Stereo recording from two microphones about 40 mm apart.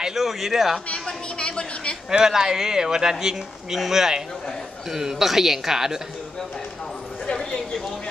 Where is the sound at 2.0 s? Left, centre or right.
Centre.